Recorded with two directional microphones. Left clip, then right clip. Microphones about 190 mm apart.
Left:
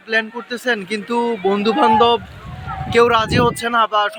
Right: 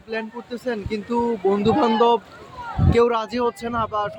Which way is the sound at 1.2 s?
15° left (ahead or behind).